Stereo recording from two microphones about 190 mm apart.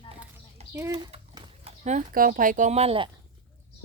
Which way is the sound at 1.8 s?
40° right (ahead or behind).